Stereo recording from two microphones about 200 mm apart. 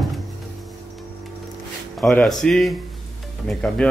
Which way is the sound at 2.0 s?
5° left (ahead or behind).